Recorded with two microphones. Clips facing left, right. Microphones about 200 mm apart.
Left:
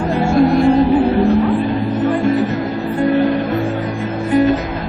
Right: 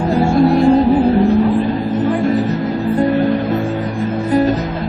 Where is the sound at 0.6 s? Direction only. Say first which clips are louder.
Right 1 dB; 40° right (ahead or behind).